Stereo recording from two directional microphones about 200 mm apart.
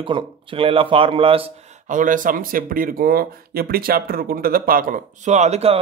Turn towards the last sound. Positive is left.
turn(degrees=-30)  # may be behind; listen again after turning